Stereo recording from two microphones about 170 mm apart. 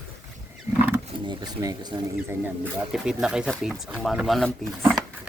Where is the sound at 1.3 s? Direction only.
25° right (ahead or behind).